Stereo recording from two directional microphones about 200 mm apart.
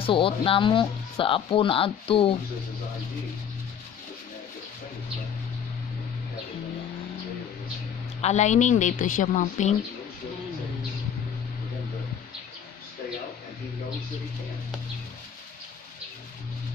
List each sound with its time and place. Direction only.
0.0 s speech: 25° left (ahead or behind)
8.2 s a woman's voice: 35° left (ahead or behind)